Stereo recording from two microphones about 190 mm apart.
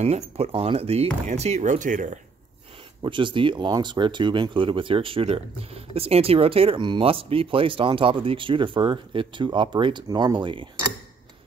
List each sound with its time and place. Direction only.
0.0 s speech: 30° right (ahead or behind)
3.0 s speech: 25° right (ahead or behind)